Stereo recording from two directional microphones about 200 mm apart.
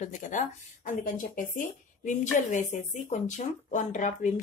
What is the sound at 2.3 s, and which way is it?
Speech, 40° left (ahead or behind).